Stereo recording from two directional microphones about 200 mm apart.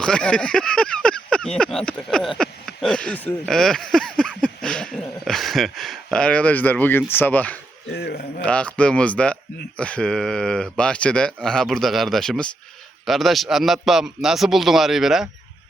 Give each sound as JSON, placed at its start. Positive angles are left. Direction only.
{"t": 0.0, "sound": "speech", "side_deg": 5}
{"t": 7.9, "sound": "speech", "side_deg": 55}
{"t": 8.4, "sound": "a man's voice", "side_deg": 5}